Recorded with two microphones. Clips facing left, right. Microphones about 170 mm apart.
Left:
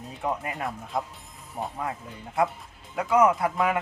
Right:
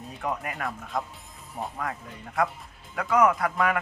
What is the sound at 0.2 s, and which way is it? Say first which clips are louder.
Speech: left 1 dB; 20° left (ahead or behind).